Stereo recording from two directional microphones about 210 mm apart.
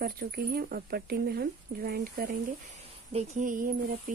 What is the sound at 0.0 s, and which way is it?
Speech, 45° right (ahead or behind).